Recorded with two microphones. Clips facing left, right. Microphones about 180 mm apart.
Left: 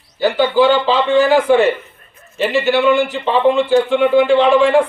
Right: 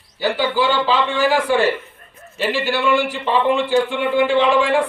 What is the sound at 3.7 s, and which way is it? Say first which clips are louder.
Speech: left 5 dB; 50° left (ahead or behind).